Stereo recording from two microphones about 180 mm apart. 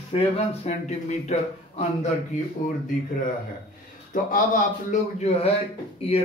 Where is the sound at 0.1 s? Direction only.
35° left (ahead or behind).